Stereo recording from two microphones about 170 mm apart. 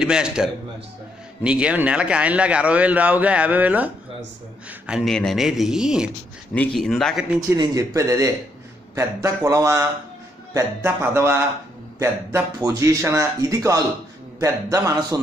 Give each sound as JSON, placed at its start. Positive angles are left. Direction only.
{"t": 0.0, "sound": "a man's voice", "side_deg": -5}
{"t": 7.3, "sound": "a man's voice", "side_deg": -20}